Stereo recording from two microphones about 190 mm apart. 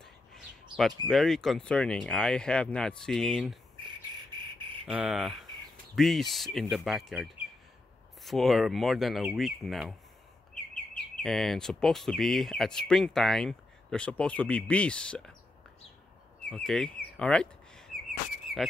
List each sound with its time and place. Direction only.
0.0 s speech: centre (ahead or behind)
3.8 s insect: 25° right (ahead or behind)
4.8 s speech: 5° right (ahead or behind)
11.2 s speech: centre (ahead or behind)
16.4 s bird: 5° left (ahead or behind)